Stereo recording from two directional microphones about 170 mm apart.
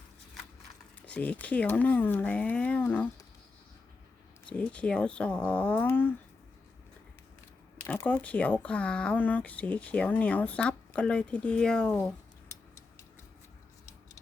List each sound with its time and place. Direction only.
1.0 s speech: 10° left (ahead or behind)
4.4 s speech: 5° left (ahead or behind)
7.8 s speech: 10° left (ahead or behind)